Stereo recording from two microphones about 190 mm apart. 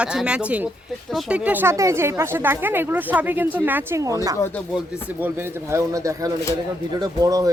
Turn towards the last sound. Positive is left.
turn(degrees=-20)  # may be behind; listen again after turning